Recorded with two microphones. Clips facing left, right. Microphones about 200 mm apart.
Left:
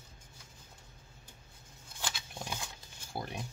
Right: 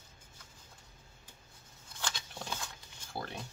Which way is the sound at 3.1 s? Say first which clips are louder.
Left 1 dB; 15° left (ahead or behind).